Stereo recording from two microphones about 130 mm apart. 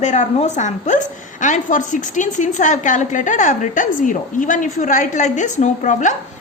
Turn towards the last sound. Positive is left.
turn(degrees=70)  # may be behind; listen again after turning